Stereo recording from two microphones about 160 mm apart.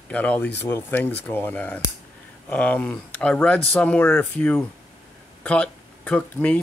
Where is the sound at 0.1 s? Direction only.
10° left (ahead or behind).